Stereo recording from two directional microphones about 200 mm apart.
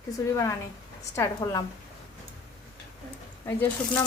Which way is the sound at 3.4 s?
10° left (ahead or behind).